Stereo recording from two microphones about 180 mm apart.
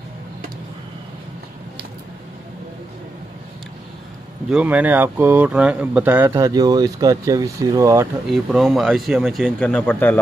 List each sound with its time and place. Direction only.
4.5 s speech: 5° right (ahead or behind)
8.3 s a man's voice: centre (ahead or behind)